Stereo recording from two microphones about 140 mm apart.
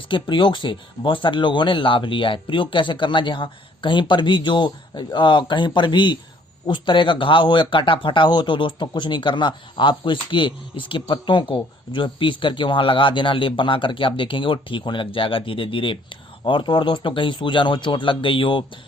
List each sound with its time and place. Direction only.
0.1 s speech: 35° left (ahead or behind)